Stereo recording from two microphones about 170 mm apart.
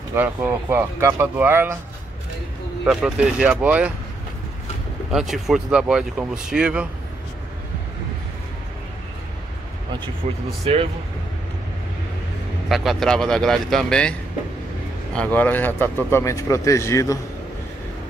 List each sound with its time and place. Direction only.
0.1 s speech: 15° right (ahead or behind)
2.8 s speech: 5° right (ahead or behind)
5.1 s speech: centre (ahead or behind)
10.2 s speech: 40° right (ahead or behind)
12.6 s speech: centre (ahead or behind)
15.1 s speech: 10° left (ahead or behind)